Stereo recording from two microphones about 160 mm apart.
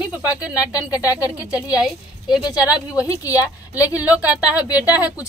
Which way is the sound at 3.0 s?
20° left (ahead or behind).